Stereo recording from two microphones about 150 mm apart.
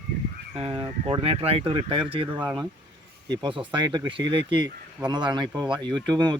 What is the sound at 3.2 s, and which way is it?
A man's voice, 30° right (ahead or behind).